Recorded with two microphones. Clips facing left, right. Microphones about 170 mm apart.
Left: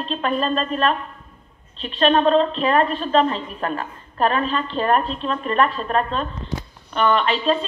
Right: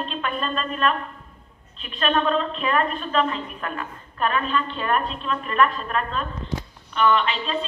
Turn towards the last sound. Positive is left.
turn(degrees=40)  # may be behind; listen again after turning